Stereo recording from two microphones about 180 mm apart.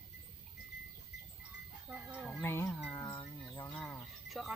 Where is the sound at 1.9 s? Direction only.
5° right (ahead or behind).